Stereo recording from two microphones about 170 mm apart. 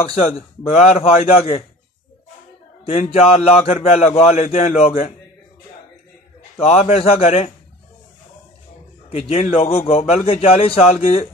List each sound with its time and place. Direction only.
0.0 s a man's voice: 35° left (ahead or behind)
2.8 s a man's voice: 35° left (ahead or behind)
6.6 s a man's voice: 35° left (ahead or behind)
9.3 s a man's voice: 35° left (ahead or behind)